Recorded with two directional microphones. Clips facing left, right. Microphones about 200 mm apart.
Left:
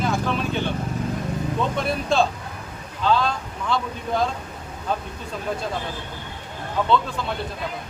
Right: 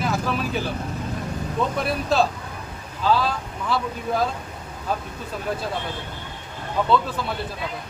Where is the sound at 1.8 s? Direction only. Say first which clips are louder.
Even; 5° right (ahead or behind).